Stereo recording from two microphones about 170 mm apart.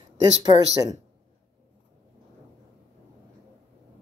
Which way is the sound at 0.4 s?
25° right (ahead or behind).